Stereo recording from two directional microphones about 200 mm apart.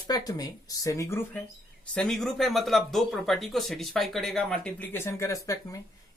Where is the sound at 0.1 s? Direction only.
20° left (ahead or behind).